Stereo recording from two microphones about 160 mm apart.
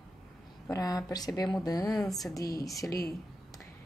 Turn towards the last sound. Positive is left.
turn(degrees=20)  # may be behind; listen again after turning